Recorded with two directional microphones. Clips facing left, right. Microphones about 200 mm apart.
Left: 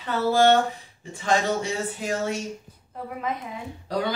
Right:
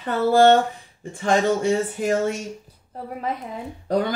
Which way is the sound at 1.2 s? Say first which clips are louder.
Right 4 dB; 50° right (ahead or behind).